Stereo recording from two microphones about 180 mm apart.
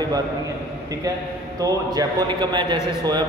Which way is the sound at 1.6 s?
20° right (ahead or behind).